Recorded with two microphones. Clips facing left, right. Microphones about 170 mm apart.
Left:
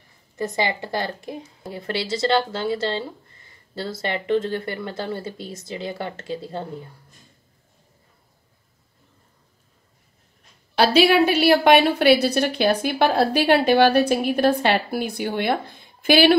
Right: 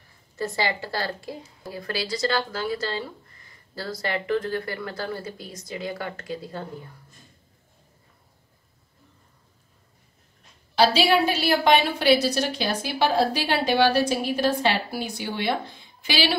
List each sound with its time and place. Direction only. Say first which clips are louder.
0.4 s a woman's voice: left 2 dB; 20° left (ahead or behind)
10.8 s a woman's voice: left 3 dB; 60° left (ahead or behind)